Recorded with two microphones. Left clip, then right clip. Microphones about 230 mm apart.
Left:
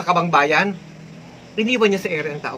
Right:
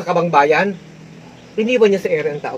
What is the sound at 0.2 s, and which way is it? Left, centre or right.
Speech, centre.